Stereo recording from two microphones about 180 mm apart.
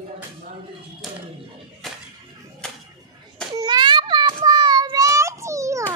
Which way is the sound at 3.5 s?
25° right (ahead or behind).